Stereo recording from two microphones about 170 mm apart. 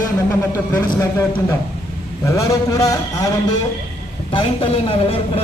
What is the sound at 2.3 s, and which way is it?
Speech, 20° left (ahead or behind).